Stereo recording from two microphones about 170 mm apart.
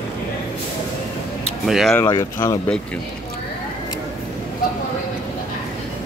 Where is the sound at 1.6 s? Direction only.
Centre (ahead or behind).